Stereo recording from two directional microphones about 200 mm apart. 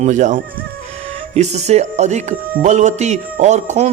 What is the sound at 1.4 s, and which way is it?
A man's voice, 35° right (ahead or behind).